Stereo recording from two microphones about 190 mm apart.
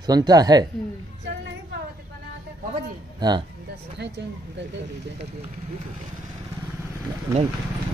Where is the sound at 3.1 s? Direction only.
20° right (ahead or behind).